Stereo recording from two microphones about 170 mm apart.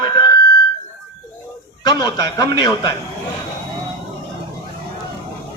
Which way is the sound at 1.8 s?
25° left (ahead or behind).